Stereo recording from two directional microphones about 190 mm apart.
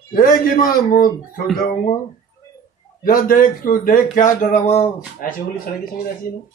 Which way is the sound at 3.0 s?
50° left (ahead or behind).